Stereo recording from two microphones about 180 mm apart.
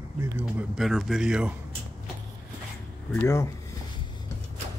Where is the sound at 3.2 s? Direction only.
15° left (ahead or behind).